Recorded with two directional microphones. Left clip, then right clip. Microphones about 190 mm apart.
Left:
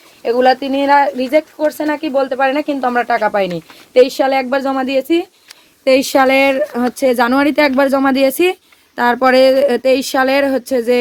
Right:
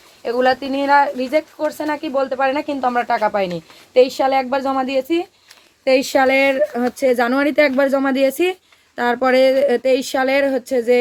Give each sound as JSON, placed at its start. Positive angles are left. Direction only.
{"t": 0.2, "sound": "speech", "side_deg": 45}